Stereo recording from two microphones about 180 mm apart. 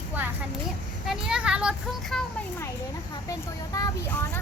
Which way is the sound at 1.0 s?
5° right (ahead or behind).